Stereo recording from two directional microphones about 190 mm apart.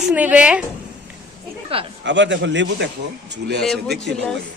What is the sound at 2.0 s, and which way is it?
Speech, 70° right (ahead or behind).